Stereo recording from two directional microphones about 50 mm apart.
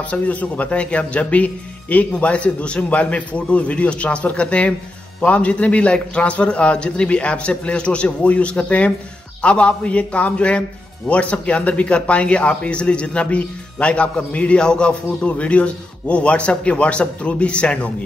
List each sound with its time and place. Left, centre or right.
0.1 s speech: left